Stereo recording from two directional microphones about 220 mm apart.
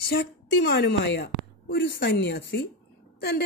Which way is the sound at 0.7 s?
50° left (ahead or behind).